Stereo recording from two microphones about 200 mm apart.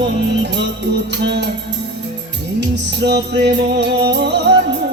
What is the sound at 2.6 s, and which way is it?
Music, 60° right (ahead or behind).